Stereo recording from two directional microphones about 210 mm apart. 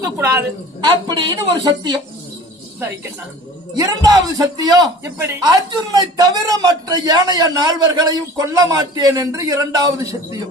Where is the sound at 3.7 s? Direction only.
20° right (ahead or behind).